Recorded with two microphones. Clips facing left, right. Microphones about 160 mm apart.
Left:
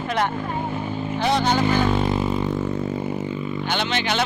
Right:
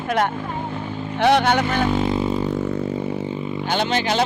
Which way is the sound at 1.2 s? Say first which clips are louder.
Right 4 dB; 65° right (ahead or behind).